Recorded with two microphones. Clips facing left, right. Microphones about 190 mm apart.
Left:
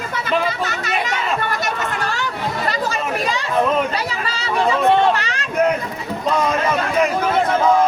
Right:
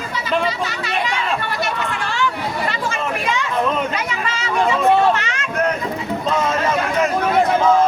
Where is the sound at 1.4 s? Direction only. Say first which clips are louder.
Even; 45° left (ahead or behind).